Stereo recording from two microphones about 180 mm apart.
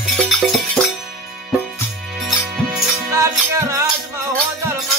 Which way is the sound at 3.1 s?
15° right (ahead or behind).